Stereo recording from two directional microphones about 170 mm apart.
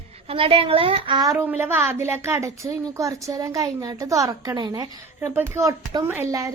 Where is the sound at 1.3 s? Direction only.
15° right (ahead or behind).